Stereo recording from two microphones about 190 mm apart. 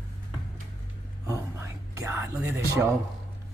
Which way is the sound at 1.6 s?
15° right (ahead or behind).